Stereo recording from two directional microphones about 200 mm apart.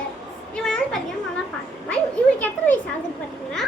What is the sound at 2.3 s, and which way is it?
Speech, 10° left (ahead or behind).